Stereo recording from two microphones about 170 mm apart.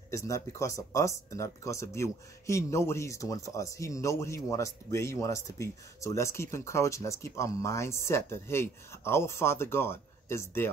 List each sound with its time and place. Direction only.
0.1 s speech: 15° left (ahead or behind)